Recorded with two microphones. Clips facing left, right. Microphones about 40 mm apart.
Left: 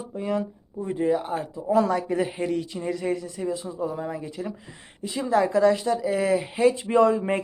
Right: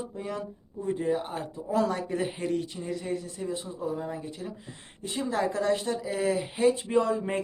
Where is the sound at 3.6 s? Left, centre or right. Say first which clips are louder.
Left 4 dB; left.